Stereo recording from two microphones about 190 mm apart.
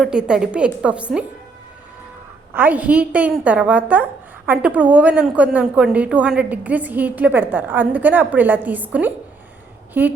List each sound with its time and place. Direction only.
0.0 s a woman's voice: 5° right (ahead or behind)
2.5 s a woman's voice: 10° right (ahead or behind)